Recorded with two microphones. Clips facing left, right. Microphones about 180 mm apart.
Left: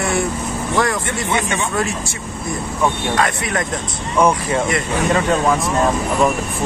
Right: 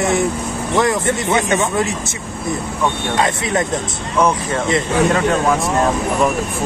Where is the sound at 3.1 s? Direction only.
20° right (ahead or behind).